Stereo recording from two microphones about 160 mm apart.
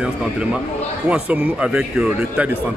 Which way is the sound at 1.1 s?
10° right (ahead or behind).